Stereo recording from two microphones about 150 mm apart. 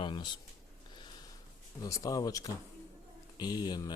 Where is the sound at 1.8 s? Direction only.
25° left (ahead or behind).